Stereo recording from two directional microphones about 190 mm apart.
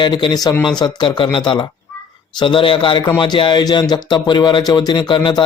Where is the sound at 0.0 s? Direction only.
25° left (ahead or behind).